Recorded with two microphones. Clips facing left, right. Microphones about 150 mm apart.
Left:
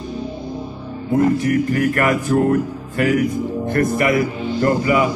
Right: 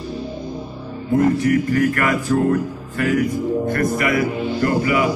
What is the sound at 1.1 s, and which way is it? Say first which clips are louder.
Speech: even; 30° left (ahead or behind).